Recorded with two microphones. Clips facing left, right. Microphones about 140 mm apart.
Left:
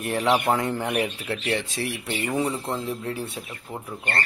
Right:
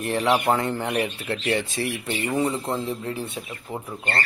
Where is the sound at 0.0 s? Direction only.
5° left (ahead or behind).